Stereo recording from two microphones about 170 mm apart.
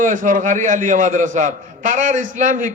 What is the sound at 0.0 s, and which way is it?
A man's voice, 50° right (ahead or behind).